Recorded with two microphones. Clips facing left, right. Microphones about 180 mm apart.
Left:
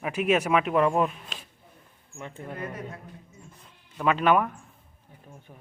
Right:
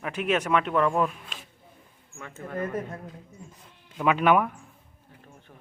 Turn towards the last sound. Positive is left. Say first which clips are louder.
# left 2 dB
turn(degrees=10)  # may be behind; listen again after turning